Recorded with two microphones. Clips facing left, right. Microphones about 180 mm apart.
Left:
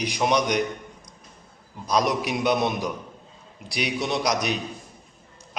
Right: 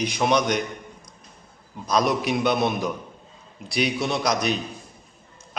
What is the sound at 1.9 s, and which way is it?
A man's voice, 15° left (ahead or behind).